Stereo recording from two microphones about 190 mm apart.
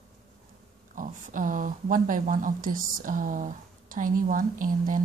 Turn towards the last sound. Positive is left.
turn(degrees=-45)  # may be behind; listen again after turning